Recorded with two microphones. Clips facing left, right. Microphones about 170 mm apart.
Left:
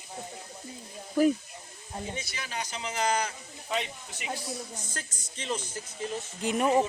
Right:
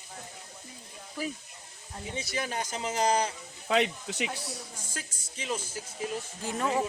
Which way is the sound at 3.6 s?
80° right.